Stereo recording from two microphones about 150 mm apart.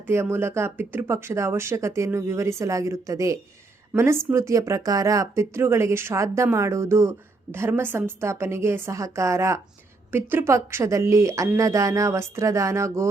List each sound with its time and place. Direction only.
0.1 s speech: 15° right (ahead or behind)